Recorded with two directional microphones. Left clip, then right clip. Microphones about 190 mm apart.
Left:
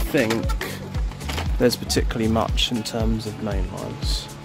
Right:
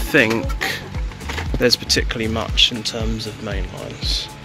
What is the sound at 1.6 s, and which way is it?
Speech, 30° left (ahead or behind).